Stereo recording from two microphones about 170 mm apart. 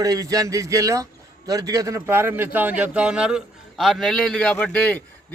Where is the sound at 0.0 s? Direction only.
20° right (ahead or behind).